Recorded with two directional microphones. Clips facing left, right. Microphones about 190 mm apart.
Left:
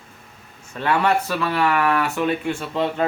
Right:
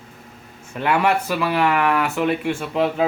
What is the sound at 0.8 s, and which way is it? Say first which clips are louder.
A man's voice: right 1 dB; 10° right (ahead or behind).